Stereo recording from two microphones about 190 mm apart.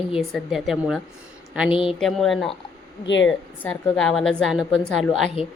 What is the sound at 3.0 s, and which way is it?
Speech, 70° left (ahead or behind).